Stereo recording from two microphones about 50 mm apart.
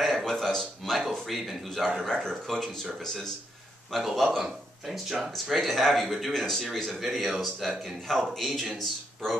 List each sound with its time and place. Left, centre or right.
0.0 s a sound: centre
1.2 s a man's voice: centre
3.9 s a man's voice: centre
5.3 s a man's voice: centre